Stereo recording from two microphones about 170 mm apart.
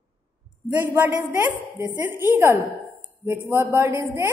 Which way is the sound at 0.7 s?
10° right (ahead or behind).